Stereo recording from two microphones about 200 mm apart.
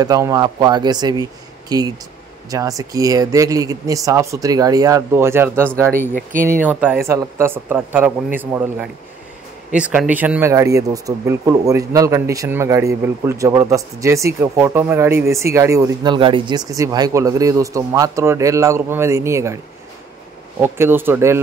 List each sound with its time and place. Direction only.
0.0 s speech: 20° right (ahead or behind)
6.1 s speech: 40° right (ahead or behind)
6.6 s speech: 10° right (ahead or behind)
20.6 s speech: 10° right (ahead or behind)